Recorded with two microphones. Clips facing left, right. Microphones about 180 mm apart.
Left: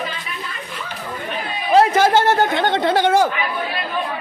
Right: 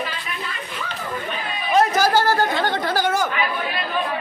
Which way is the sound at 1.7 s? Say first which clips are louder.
Left 4 dB; 25° left (ahead or behind).